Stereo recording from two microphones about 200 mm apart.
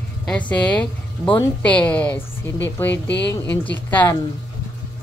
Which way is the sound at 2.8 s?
60° left (ahead or behind).